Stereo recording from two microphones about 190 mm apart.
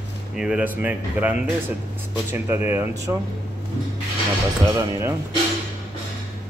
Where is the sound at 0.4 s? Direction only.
5° right (ahead or behind).